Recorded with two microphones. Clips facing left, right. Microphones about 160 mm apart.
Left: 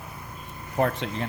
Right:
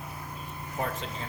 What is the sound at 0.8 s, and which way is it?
Speech, 70° left (ahead or behind).